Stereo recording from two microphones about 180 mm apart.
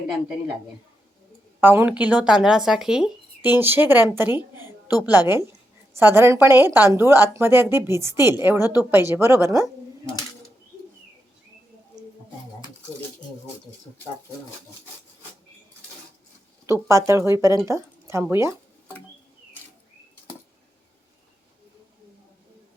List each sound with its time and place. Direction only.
1.6 s speech: 10° right (ahead or behind)
6.0 s a woman's voice: 15° right (ahead or behind)
16.6 s a woman's voice: 15° right (ahead or behind)